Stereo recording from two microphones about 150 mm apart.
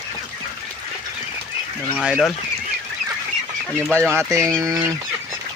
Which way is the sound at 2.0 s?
5° right (ahead or behind).